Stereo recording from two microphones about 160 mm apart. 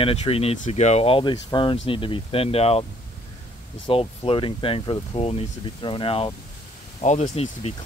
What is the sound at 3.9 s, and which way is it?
Speech, 35° left (ahead or behind).